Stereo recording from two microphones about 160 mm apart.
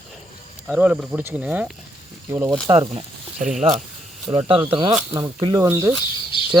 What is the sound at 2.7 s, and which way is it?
Speech, 35° right (ahead or behind).